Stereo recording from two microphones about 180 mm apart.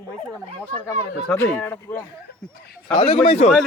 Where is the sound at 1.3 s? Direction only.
10° left (ahead or behind).